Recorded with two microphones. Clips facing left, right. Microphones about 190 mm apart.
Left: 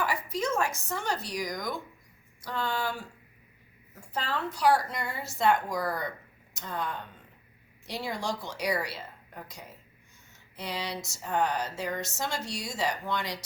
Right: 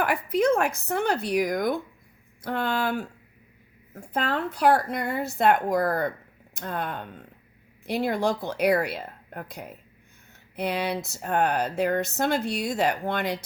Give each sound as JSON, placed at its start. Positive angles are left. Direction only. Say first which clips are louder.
{"t": 0.0, "sound": "a woman's voice", "louder": "right 8 dB", "side_deg": -60}